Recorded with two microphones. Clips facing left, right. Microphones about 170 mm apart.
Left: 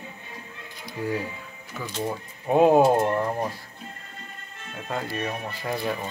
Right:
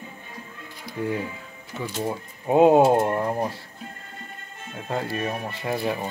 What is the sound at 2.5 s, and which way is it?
Speech, 25° right (ahead or behind).